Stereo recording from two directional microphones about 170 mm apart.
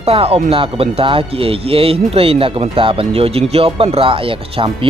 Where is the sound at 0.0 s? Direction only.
35° right (ahead or behind).